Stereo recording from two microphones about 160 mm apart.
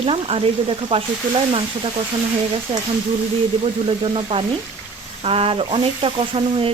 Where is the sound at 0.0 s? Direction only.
35° right (ahead or behind).